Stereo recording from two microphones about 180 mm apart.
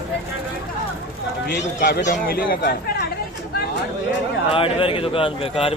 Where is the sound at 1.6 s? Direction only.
50° left (ahead or behind).